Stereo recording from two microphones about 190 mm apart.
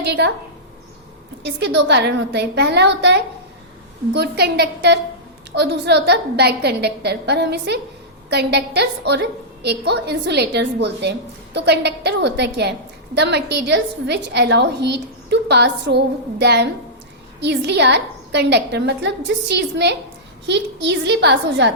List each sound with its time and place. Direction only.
0.0 s a woman's voice: 65° right (ahead or behind)
1.4 s a woman's voice: 65° right (ahead or behind)